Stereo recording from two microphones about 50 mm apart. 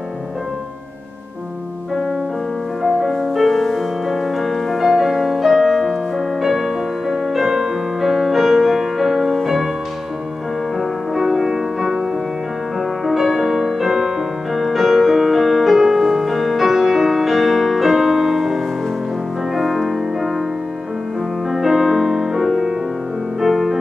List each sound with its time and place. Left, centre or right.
2.8 s music: centre
10.8 s music: centre
13.0 s music: centre
21.5 s music: centre